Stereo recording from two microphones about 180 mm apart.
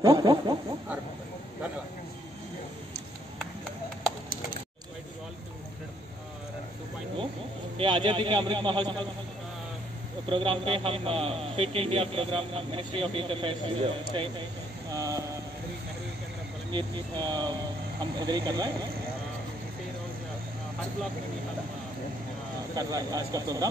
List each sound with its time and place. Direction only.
0.0 s snicker: 20° right (ahead or behind)
7.7 s a man's voice: 30° right (ahead or behind)
10.3 s a man's voice: 30° right (ahead or behind)
14.9 s vehicle: 20° right (ahead or behind)
16.7 s speech: 25° right (ahead or behind)
22.8 s speech: 20° right (ahead or behind)